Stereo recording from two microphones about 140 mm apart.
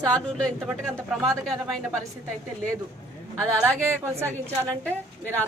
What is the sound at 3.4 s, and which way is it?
Speech, 10° left (ahead or behind).